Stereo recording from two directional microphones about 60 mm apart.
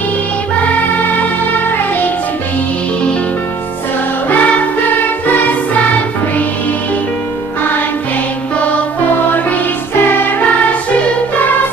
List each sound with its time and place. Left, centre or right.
4.3 s music: left